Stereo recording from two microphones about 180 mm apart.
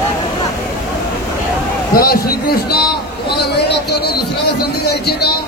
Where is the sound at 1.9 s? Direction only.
55° left (ahead or behind).